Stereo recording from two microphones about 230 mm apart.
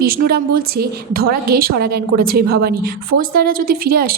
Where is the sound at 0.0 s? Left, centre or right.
Right.